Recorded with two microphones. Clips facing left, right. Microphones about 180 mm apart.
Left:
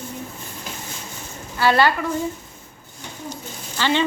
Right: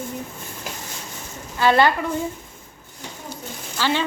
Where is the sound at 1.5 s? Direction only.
20° right (ahead or behind).